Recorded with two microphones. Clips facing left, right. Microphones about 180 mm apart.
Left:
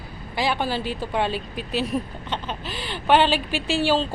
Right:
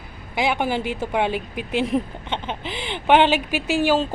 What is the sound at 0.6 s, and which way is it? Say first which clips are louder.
A woman's voice: right 3 dB; 20° right (ahead or behind).